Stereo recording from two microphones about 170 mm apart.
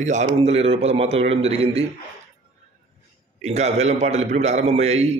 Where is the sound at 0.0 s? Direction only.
45° right (ahead or behind).